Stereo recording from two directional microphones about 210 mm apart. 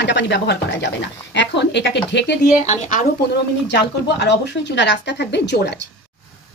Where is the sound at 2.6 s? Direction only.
35° left (ahead or behind).